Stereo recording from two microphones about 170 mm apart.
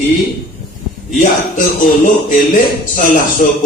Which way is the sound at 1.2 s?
50° left (ahead or behind).